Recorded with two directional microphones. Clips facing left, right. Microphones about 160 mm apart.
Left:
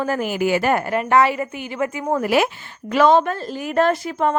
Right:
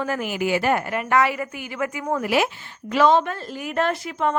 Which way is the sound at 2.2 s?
45° left (ahead or behind).